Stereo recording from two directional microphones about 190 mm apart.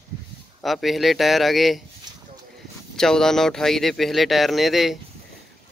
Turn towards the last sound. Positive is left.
turn(degrees=0)  # may be behind; listen again after turning